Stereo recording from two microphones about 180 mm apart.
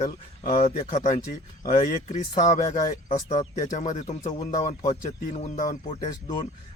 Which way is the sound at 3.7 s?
40° left (ahead or behind).